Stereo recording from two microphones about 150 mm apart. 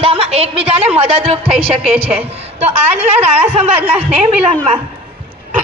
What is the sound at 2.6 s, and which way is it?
A woman's voice, 45° right (ahead or behind).